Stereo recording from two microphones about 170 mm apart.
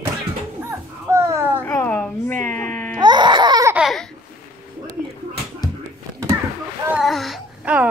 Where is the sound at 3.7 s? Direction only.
Centre (ahead or behind).